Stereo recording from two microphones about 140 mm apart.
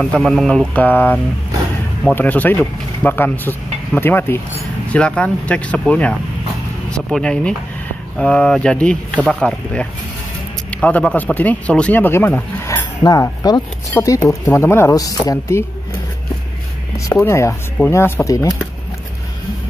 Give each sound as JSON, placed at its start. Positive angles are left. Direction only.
{"t": 0.0, "sound": "speech", "side_deg": 5}
{"t": 16.9, "sound": "speech", "side_deg": 20}